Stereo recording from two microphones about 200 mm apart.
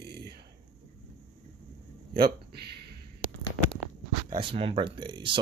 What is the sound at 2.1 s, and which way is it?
Speech, 50° right (ahead or behind).